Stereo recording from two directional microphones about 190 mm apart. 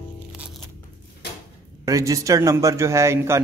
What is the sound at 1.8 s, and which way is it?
A man's voice, 15° right (ahead or behind).